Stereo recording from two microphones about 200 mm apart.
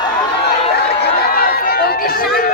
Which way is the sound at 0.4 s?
55° left (ahead or behind).